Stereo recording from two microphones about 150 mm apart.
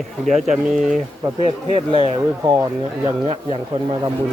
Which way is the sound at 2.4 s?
25° right (ahead or behind).